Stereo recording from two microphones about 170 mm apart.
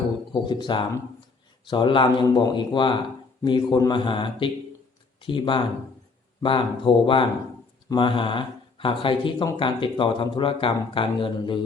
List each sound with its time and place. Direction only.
0.4 s speech: 30° left (ahead or behind)